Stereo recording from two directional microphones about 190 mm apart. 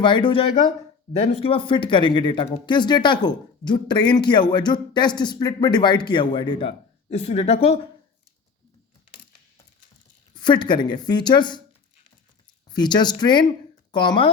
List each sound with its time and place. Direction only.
0.0 s speech: 25° left (ahead or behind)
10.3 s speech: 25° left (ahead or behind)
12.7 s speech: 20° left (ahead or behind)